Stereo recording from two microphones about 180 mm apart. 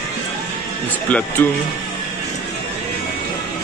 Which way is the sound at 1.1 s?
5° left (ahead or behind).